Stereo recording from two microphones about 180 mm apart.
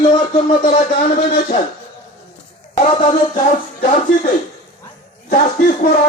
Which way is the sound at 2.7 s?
35° left (ahead or behind).